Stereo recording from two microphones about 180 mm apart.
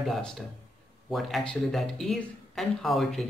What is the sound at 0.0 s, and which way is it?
Speech, centre (ahead or behind).